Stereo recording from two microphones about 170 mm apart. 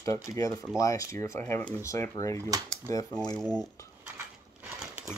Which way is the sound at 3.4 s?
Centre (ahead or behind).